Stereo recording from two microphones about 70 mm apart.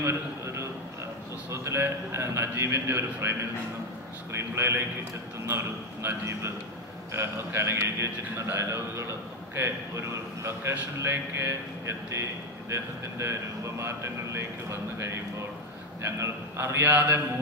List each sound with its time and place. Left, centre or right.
0.0 s a man's voice: right
4.4 s a man's voice: right